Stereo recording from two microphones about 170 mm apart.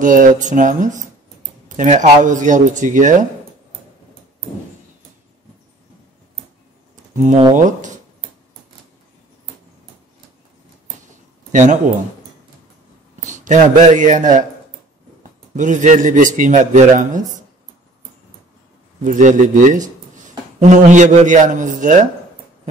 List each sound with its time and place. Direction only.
0.0 s a man's voice: 50° right (ahead or behind)
7.2 s a man's voice: 45° right (ahead or behind)
11.5 s speech: 45° right (ahead or behind)
13.2 s speech: 45° right (ahead or behind)
15.5 s a man's voice: 45° right (ahead or behind)
19.0 s speech: 45° right (ahead or behind)